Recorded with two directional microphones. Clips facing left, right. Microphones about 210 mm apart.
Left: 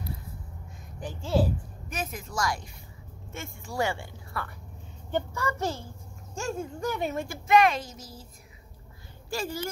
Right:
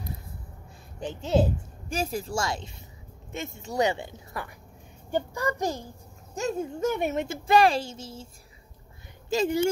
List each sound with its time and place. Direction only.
0.9 s a woman's voice: 20° right (ahead or behind)
9.3 s a woman's voice: 20° right (ahead or behind)